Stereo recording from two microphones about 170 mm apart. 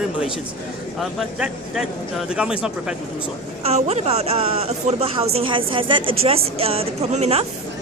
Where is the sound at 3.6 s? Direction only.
40° right (ahead or behind).